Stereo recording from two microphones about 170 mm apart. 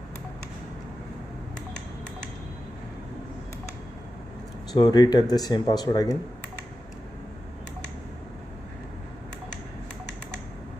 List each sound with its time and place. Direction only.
4.7 s speech: 25° left (ahead or behind)